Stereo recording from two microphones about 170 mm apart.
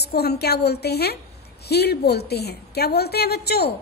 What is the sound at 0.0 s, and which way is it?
A woman's voice, 70° left (ahead or behind).